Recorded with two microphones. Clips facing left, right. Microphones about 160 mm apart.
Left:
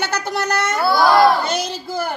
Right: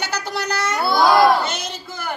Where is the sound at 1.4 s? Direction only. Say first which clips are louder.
Left 5 dB; 35° left (ahead or behind).